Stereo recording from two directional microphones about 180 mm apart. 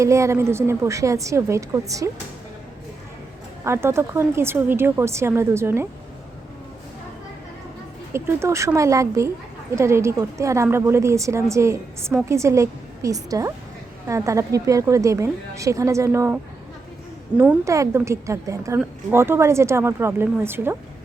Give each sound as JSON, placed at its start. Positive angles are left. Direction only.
{"t": 0.0, "sound": "a woman's voice", "side_deg": -15}
{"t": 3.6, "sound": "a woman's voice", "side_deg": -15}
{"t": 8.1, "sound": "a woman's voice", "side_deg": -15}